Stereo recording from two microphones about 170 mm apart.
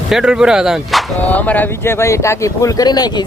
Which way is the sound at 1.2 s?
10° left (ahead or behind).